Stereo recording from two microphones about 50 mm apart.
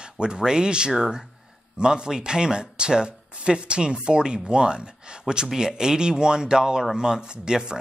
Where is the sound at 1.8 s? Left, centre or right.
Centre.